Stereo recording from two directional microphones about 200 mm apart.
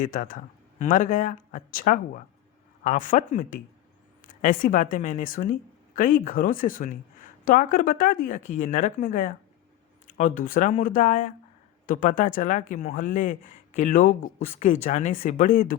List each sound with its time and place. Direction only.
0.0 s speech: 40° left (ahead or behind)